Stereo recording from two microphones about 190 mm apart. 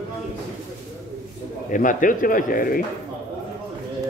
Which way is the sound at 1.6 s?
45° left (ahead or behind).